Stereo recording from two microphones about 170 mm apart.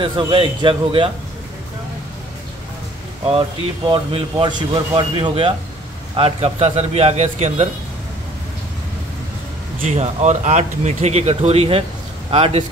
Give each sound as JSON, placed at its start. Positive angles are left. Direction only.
{"t": 0.0, "sound": "speech", "side_deg": -30}
{"t": 3.3, "sound": "speech", "side_deg": -30}
{"t": 9.8, "sound": "speech", "side_deg": -45}